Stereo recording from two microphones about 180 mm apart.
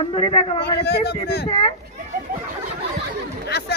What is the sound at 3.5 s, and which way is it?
Chatter, 65° left (ahead or behind).